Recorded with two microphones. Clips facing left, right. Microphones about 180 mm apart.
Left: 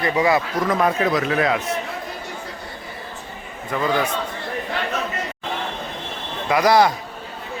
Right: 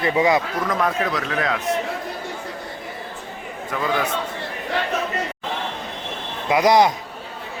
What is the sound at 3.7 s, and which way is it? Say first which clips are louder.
Speech: left 2 dB; centre (ahead or behind).